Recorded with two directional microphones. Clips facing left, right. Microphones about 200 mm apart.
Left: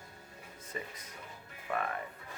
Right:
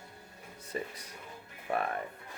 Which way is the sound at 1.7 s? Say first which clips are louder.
Right 3 dB; 30° right (ahead or behind).